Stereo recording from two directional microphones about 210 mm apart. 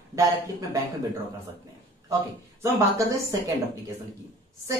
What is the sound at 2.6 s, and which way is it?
Speech, 15° right (ahead or behind).